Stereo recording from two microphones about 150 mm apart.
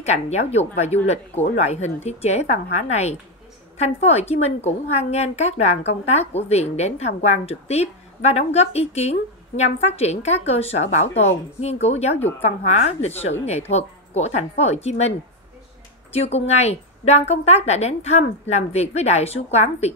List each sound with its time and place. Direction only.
0.0 s a woman's voice: 45° left (ahead or behind)